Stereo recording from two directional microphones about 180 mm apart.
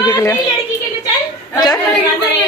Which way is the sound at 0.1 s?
15° left (ahead or behind).